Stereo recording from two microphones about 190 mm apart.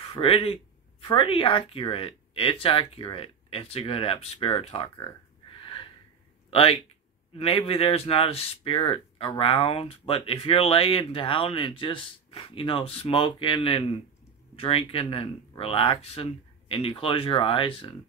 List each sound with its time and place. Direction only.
0.1 s speech: 30° left (ahead or behind)